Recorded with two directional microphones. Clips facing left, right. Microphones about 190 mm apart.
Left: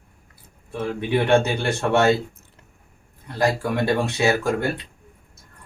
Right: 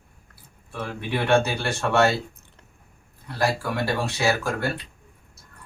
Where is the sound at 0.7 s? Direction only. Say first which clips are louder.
Left 6 dB; 20° left (ahead or behind).